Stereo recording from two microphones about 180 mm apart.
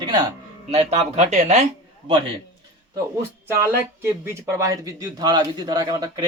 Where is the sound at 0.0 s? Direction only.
25° right (ahead or behind).